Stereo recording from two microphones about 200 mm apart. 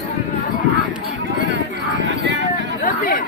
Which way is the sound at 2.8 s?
40° left (ahead or behind).